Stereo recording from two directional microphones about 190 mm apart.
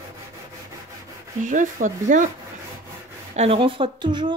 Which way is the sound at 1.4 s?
45° right (ahead or behind).